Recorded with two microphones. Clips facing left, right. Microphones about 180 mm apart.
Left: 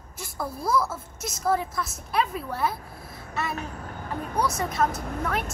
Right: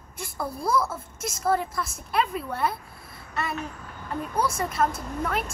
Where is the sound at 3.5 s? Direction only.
50° left (ahead or behind).